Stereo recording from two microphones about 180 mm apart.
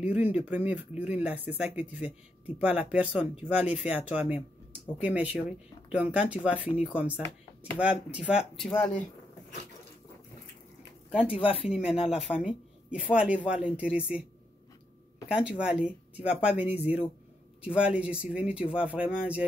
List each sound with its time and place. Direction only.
0.0 s speech: 10° right (ahead or behind)
7.8 s speech: 5° right (ahead or behind)
11.1 s speech: 5° right (ahead or behind)
11.3 s speech: 30° left (ahead or behind)
11.6 s speech: 5° right (ahead or behind)
15.4 s speech: 5° right (ahead or behind)